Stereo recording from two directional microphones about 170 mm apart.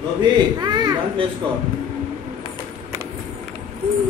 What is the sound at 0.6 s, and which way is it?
Children playing, 25° right (ahead or behind).